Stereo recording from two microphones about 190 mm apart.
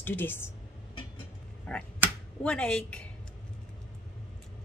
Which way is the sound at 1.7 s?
5° left (ahead or behind).